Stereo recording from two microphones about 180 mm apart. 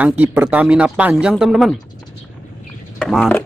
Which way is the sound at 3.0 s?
5° left (ahead or behind).